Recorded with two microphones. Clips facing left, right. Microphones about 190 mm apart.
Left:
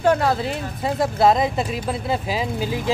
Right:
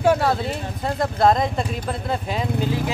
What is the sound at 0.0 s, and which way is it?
Speech, 5° right (ahead or behind).